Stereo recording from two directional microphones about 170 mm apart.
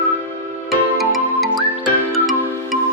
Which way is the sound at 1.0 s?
Centre (ahead or behind).